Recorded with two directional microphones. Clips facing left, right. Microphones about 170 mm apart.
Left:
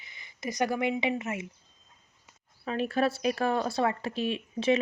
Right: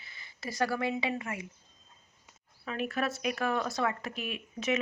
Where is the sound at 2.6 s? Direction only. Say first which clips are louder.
Left 5 dB; 30° left (ahead or behind).